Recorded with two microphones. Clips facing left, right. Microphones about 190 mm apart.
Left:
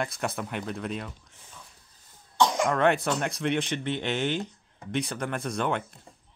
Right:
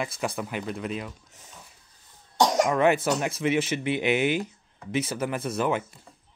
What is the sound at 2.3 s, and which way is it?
Cough, 40° right (ahead or behind).